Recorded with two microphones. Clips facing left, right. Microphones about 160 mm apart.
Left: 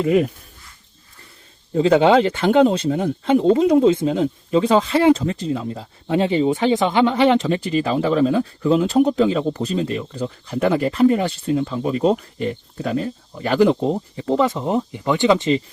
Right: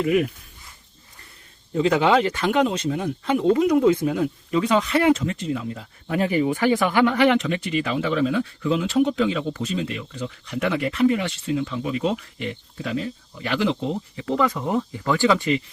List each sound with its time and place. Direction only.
0.0 s speech: 30° left (ahead or behind)
1.7 s speech: 30° left (ahead or behind)